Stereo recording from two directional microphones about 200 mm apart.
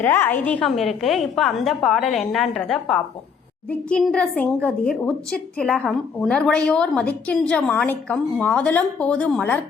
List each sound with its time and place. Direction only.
0.0 s a child's voice: 10° left (ahead or behind)